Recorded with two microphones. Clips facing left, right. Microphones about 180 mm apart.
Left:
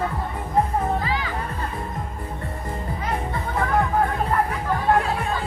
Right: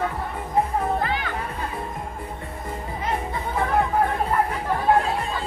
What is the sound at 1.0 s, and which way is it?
Music, 60° right (ahead or behind).